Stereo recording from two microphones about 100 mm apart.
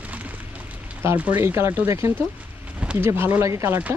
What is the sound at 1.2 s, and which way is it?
Speech, 20° right (ahead or behind).